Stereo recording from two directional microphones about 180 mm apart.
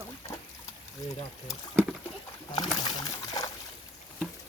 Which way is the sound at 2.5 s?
20° left (ahead or behind).